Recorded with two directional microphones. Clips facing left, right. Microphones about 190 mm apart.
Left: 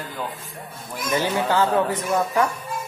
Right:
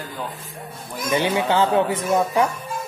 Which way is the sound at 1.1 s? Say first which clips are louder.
Right 2 dB; 20° right (ahead or behind).